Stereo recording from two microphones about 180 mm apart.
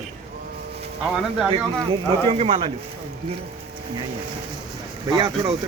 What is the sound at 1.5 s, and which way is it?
Speech, 30° right (ahead or behind).